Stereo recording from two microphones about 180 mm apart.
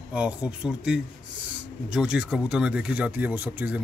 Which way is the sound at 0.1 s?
5° right (ahead or behind).